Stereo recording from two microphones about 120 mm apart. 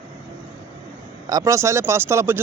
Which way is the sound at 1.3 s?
30° right (ahead or behind).